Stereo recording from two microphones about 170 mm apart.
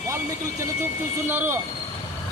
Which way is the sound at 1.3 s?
15° right (ahead or behind).